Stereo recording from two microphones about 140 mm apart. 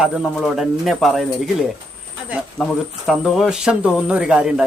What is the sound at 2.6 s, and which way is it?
Speech, 5° right (ahead or behind).